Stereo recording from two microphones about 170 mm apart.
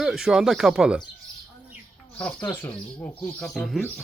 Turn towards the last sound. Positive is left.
turn(degrees=0)  # may be behind; listen again after turning